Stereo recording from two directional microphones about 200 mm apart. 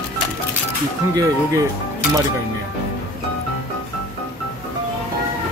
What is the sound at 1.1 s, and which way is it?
Speech, 15° right (ahead or behind).